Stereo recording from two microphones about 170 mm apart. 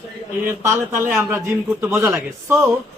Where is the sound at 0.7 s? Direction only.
15° right (ahead or behind).